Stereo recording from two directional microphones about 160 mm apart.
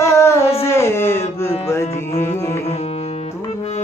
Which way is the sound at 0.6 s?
15° left (ahead or behind).